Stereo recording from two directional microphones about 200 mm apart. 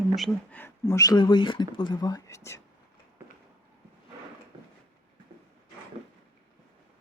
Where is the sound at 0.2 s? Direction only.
10° left (ahead or behind).